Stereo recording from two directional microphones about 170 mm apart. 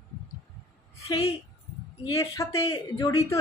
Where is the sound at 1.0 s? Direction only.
20° left (ahead or behind).